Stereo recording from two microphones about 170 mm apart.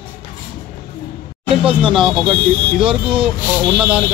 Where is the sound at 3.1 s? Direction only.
30° right (ahead or behind).